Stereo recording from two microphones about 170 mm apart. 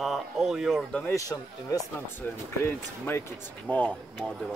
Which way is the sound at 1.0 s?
20° left (ahead or behind).